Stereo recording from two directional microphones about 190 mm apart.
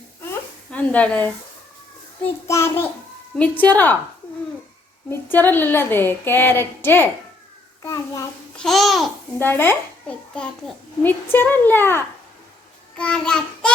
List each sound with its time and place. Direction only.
0.7 s speech: 10° left (ahead or behind)
2.5 s speech: 15° left (ahead or behind)
5.0 s a child's voice: 10° left (ahead or behind)
8.5 s a child's voice: centre (ahead or behind)
9.5 s a child's voice: 10° left (ahead or behind)